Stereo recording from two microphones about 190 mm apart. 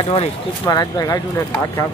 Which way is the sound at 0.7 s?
20° left (ahead or behind).